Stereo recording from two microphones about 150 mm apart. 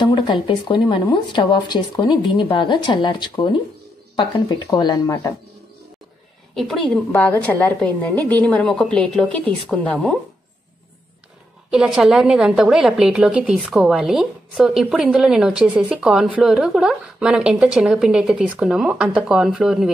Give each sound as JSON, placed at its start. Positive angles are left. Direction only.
{"t": 0.0, "sound": "speech", "side_deg": 30}
{"t": 6.5, "sound": "a woman's voice", "side_deg": 0}
{"t": 11.7, "sound": "a woman's voice", "side_deg": -5}